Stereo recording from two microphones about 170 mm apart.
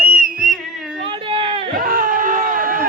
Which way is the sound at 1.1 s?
30° right (ahead or behind).